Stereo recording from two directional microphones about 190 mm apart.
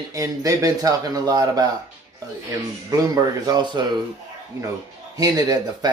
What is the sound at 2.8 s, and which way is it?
Speech, 20° right (ahead or behind).